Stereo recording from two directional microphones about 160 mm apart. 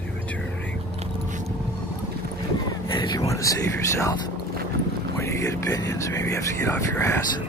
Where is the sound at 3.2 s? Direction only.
20° left (ahead or behind).